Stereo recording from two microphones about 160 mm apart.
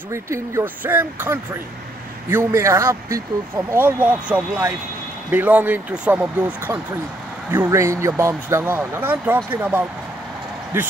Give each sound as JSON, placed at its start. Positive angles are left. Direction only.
{"t": 0.1, "sound": "speech", "side_deg": -15}